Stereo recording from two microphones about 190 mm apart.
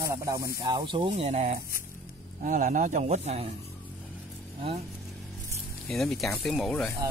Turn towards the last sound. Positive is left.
turn(degrees=5)  # may be behind; listen again after turning